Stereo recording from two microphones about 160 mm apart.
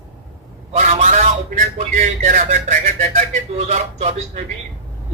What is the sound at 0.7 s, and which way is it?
A man's voice, 45° right (ahead or behind).